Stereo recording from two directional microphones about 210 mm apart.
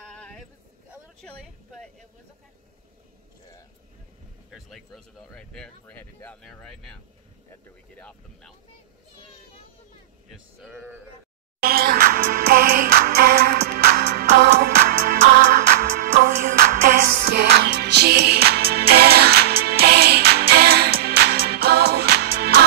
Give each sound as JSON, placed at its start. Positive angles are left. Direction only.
{"t": 0.1, "sound": "a sound", "side_deg": 5}
{"t": 1.2, "sound": "speech", "side_deg": 5}
{"t": 4.5, "sound": "speech", "side_deg": 0}
{"t": 10.6, "sound": "speech", "side_deg": -10}
{"t": 11.6, "sound": "music", "side_deg": -45}
{"t": 17.5, "sound": "music", "side_deg": -50}